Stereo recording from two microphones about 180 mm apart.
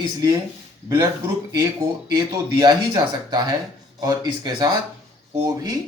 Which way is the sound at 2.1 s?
20° right (ahead or behind).